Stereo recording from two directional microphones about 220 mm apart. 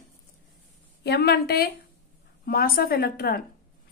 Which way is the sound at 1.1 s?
45° left (ahead or behind).